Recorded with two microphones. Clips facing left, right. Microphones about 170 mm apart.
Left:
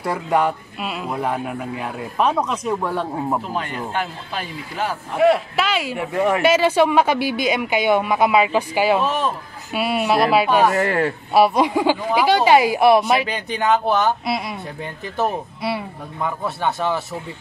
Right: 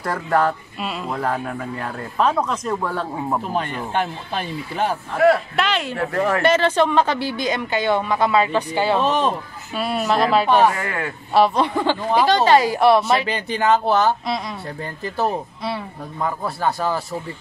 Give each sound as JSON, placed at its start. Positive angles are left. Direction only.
{"t": 0.0, "sound": "speech", "side_deg": 10}
{"t": 0.7, "sound": "speech", "side_deg": 5}
{"t": 5.1, "sound": "speech", "side_deg": 20}
{"t": 5.6, "sound": "speech", "side_deg": 5}
{"t": 10.7, "sound": "a man's voice", "side_deg": 35}
{"t": 11.3, "sound": "speech", "side_deg": 10}
{"t": 13.6, "sound": "speech", "side_deg": 0}